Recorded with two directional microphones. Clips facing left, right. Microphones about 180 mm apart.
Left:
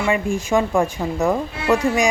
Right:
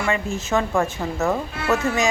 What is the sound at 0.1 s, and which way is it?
Speech, 15° left (ahead or behind).